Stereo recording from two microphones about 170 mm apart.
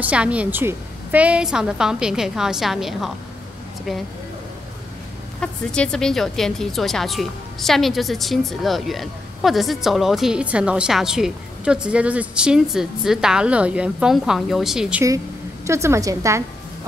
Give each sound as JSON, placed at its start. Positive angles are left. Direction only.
{"t": 0.0, "sound": "speech", "side_deg": -5}
{"t": 5.4, "sound": "speech", "side_deg": 5}
{"t": 15.6, "sound": "a woman's voice", "side_deg": -15}